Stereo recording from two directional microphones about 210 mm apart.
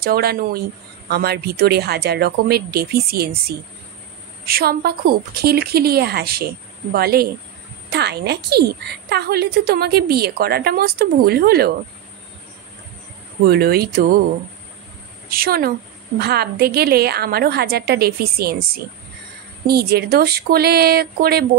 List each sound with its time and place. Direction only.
0.0 s a woman's voice: 45° right (ahead or behind)
13.5 s a woman's voice: 50° right (ahead or behind)
15.2 s a woman's voice: 45° right (ahead or behind)
19.6 s a woman's voice: 50° right (ahead or behind)